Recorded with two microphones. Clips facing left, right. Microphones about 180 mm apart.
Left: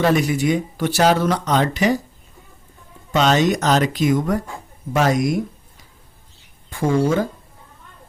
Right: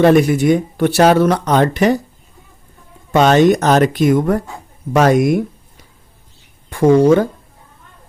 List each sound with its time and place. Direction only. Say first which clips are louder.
0.0 s speech: right 7 dB; 55° right (ahead or behind)
3.1 s speech: right 6 dB; 55° right (ahead or behind)
6.7 s speech: right 8 dB; 65° right (ahead or behind)